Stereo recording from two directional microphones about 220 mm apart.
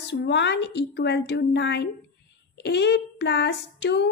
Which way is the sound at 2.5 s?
50° left (ahead or behind).